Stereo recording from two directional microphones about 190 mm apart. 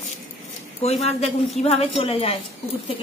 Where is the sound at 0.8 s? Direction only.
35° left (ahead or behind).